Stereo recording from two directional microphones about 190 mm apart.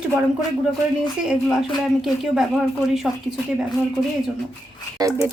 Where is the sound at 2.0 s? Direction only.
Centre (ahead or behind).